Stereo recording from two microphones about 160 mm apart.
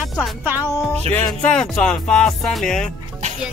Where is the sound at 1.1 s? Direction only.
5° left (ahead or behind).